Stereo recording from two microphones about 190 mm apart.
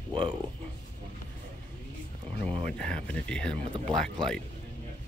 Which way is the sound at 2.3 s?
35° right (ahead or behind).